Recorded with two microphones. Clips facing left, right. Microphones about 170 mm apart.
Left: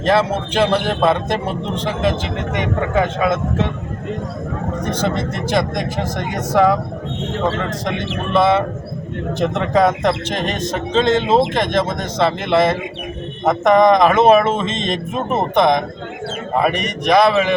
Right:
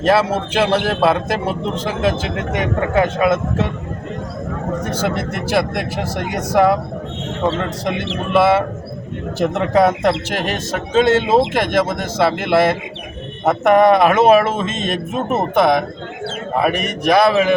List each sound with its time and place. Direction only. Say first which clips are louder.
0.0 s a man's voice: right 1 dB; 10° right (ahead or behind)
3.2 s a man's voice: right 2 dB; 10° right (ahead or behind)
4.8 s a man's voice: left 2 dB; 5° right (ahead or behind)
7.9 s a man's voice: right 1 dB; 10° right (ahead or behind)